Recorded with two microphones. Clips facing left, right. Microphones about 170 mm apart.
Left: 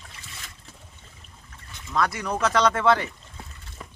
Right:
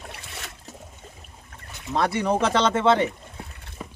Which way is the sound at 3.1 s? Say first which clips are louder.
Right 6 dB; 60° right (ahead or behind).